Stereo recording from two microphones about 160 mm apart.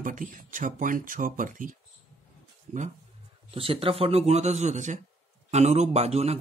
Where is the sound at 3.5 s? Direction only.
35° right (ahead or behind).